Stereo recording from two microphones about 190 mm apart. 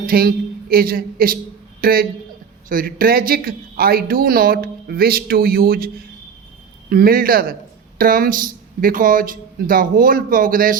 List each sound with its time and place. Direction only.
0.0 s speech: 50° right (ahead or behind)
6.9 s speech: 50° right (ahead or behind)